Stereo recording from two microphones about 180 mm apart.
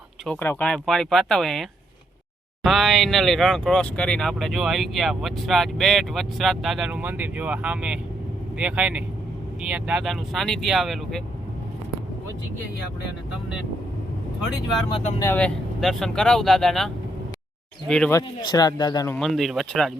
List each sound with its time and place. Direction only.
0.3 s speech: 10° left (ahead or behind)
2.6 s speech: centre (ahead or behind)
15.2 s speech: 10° left (ahead or behind)
18.1 s speech: 20° left (ahead or behind)
19.1 s speech: centre (ahead or behind)